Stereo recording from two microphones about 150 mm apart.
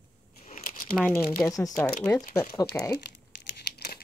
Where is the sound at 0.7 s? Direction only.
70° left (ahead or behind).